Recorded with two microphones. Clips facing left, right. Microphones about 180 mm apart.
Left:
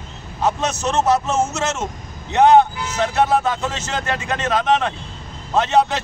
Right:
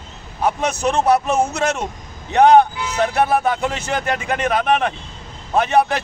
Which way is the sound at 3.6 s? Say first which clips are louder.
Right 3 dB; 15° right (ahead or behind).